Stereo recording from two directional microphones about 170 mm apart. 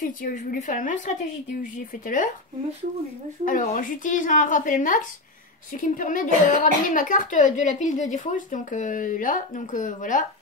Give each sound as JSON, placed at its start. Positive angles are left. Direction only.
{"t": 0.0, "sound": "a woman's voice", "side_deg": 55}
{"t": 3.4, "sound": "a woman's voice", "side_deg": 50}